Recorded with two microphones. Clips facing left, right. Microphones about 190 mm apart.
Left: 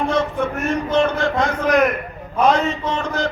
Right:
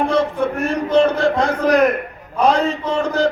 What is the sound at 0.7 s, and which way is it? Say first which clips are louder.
A man's voice: right 3 dB; 35° right (ahead or behind).